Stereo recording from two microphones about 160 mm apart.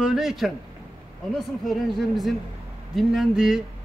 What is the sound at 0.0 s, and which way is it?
A man's voice, centre (ahead or behind).